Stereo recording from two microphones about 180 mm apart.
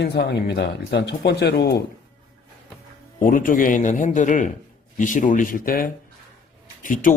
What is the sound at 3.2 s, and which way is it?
A man's voice, 50° left (ahead or behind).